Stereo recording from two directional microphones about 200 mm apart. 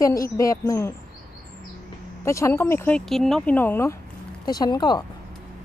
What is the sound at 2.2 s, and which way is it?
A woman's voice, 15° left (ahead or behind).